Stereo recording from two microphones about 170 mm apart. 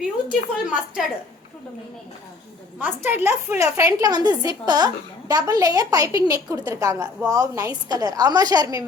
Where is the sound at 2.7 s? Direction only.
10° right (ahead or behind).